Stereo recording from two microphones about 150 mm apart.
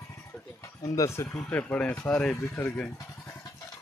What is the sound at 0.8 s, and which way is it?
Speech, 20° left (ahead or behind).